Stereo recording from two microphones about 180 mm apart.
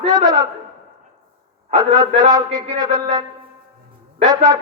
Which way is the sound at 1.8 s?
20° right (ahead or behind).